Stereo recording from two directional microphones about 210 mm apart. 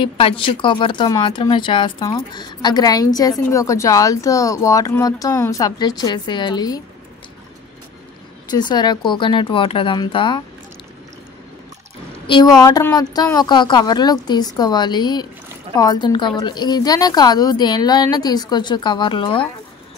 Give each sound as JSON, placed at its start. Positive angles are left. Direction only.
{"t": 0.0, "sound": "speech", "side_deg": 25}
{"t": 8.5, "sound": "a woman's voice", "side_deg": 20}
{"t": 12.5, "sound": "a woman's voice", "side_deg": 15}